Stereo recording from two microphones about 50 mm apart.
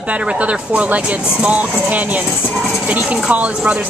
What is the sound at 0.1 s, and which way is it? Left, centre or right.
A woman's voice, right.